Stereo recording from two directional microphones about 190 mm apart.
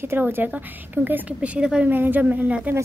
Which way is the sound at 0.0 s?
10° right (ahead or behind).